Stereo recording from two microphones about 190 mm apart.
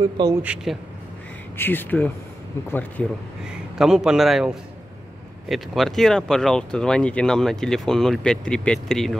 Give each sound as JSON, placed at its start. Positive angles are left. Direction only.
{"t": 0.0, "sound": "a man's voice", "side_deg": -20}
{"t": 0.4, "sound": "a man's voice", "side_deg": -5}
{"t": 1.6, "sound": "speech", "side_deg": 10}
{"t": 3.4, "sound": "speech", "side_deg": 0}